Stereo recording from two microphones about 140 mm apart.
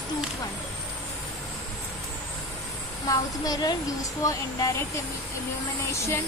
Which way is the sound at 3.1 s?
25° left (ahead or behind).